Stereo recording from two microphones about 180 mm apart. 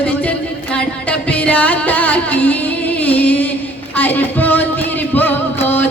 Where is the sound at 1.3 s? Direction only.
10° left (ahead or behind).